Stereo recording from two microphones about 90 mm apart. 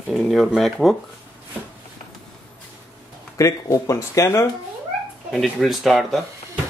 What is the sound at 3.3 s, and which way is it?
Speech, 40° left (ahead or behind).